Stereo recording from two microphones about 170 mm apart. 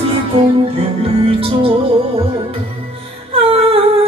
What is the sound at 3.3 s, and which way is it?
Humming, 35° right (ahead or behind).